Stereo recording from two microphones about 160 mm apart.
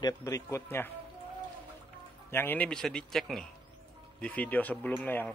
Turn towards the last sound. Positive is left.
turn(degrees=10)  # may be behind; listen again after turning